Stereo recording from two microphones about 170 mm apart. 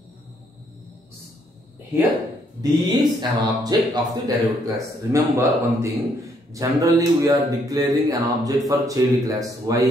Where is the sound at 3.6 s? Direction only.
20° right (ahead or behind).